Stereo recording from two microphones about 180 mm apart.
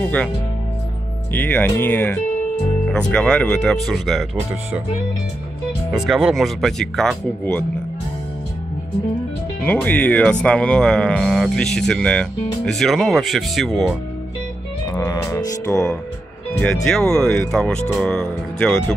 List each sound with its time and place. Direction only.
1.3 s speech: 10° left (ahead or behind)
5.9 s speech: centre (ahead or behind)
9.6 s speech: 10° left (ahead or behind)
14.9 s music: 20° left (ahead or behind)
16.5 s speech: 10° left (ahead or behind)